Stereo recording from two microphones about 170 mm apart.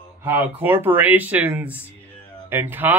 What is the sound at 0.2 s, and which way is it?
Speech, 10° right (ahead or behind).